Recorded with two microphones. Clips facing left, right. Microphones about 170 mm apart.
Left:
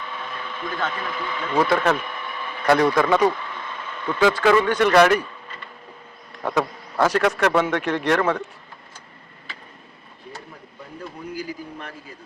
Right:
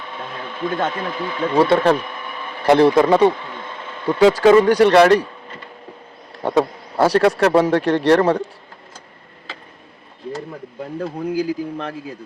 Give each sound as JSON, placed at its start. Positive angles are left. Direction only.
{"t": 0.9, "sound": "a man's voice", "side_deg": -30}
{"t": 6.3, "sound": "a man's voice", "side_deg": -30}
{"t": 10.5, "sound": "speech", "side_deg": -70}